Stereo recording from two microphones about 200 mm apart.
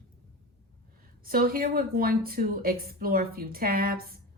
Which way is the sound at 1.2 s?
50° right (ahead or behind).